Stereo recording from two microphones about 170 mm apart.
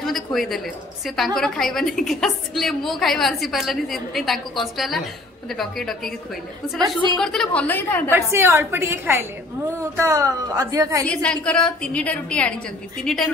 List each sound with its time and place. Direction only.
0.0 s a sound: centre (ahead or behind)
1.0 s a woman's voice: centre (ahead or behind)
7.2 s a woman's voice: 5° left (ahead or behind)
8.1 s a woman's voice: 15° right (ahead or behind)
11.1 s a woman's voice: 5° left (ahead or behind)